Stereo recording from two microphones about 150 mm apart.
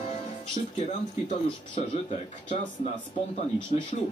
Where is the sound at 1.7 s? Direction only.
50° left (ahead or behind).